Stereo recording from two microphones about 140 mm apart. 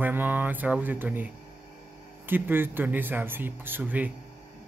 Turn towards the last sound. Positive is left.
turn(degrees=-10)  # may be behind; listen again after turning